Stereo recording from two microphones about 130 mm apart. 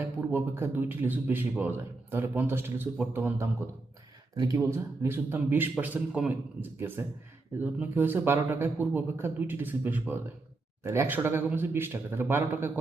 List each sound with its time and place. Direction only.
0.0 s speech: 15° right (ahead or behind)
4.5 s speech: 20° right (ahead or behind)